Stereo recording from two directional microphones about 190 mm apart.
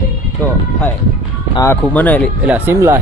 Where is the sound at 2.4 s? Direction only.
10° right (ahead or behind).